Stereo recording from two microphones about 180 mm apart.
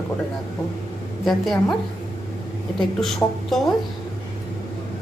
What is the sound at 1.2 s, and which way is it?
Speech, centre (ahead or behind).